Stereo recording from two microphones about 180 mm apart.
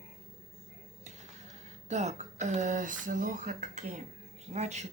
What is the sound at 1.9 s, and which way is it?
Speech, 40° right (ahead or behind).